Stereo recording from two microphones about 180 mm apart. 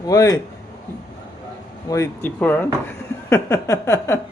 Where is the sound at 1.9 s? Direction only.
15° left (ahead or behind).